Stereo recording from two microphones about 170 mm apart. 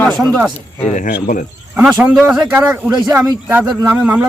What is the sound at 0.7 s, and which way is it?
Speech, 45° left (ahead or behind).